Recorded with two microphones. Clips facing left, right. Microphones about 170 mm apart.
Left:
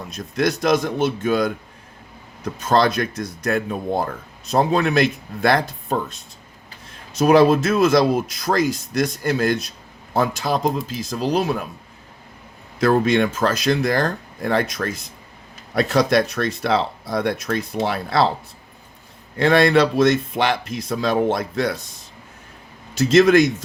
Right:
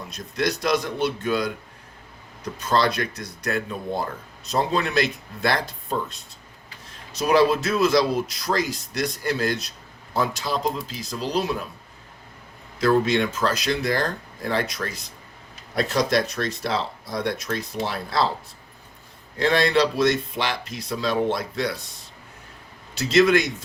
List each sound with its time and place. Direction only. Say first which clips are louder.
0.3 s speech: left 4 dB; 50° left (ahead or behind)
12.8 s speech: left 3 dB; 50° left (ahead or behind)
15.7 s speech: left 4 dB; 65° left (ahead or behind)
19.4 s speech: left 5 dB; 55° left (ahead or behind)
23.0 s speech: left 5 dB; 45° left (ahead or behind)